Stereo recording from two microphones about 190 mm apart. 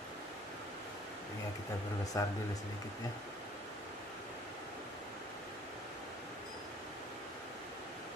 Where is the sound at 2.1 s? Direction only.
15° left (ahead or behind).